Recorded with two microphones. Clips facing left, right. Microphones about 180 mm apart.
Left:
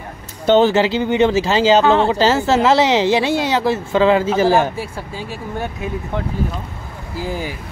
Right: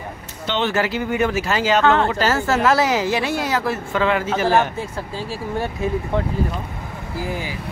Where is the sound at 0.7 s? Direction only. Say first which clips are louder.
Left 5 dB; 25° left (ahead or behind).